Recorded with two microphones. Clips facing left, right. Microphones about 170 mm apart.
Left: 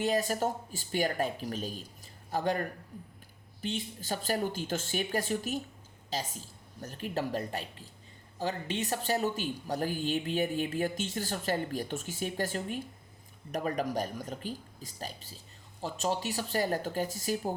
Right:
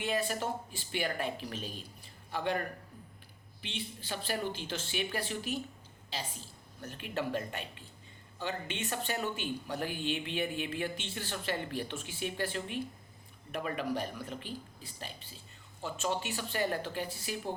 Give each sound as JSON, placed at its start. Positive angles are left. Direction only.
{"t": 0.0, "sound": "speech", "side_deg": 40}
{"t": 3.6, "sound": "a woman's voice", "side_deg": 40}